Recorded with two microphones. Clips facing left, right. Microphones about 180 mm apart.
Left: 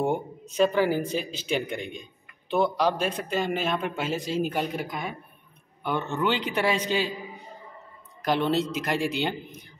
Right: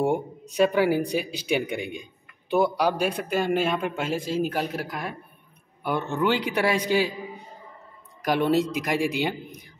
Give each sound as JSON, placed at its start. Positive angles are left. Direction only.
{"t": 0.0, "sound": "speech", "side_deg": -10}
{"t": 8.2, "sound": "speech", "side_deg": -10}